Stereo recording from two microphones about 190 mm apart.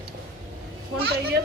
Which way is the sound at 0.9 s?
60° right (ahead or behind).